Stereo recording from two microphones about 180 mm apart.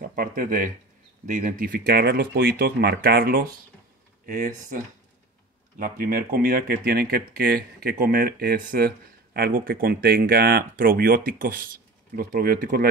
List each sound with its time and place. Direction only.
0.0 s speech: 50° right (ahead or behind)